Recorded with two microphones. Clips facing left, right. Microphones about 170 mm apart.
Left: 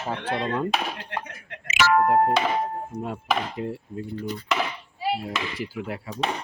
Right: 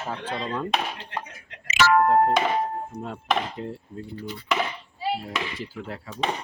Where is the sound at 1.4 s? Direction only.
55° left (ahead or behind).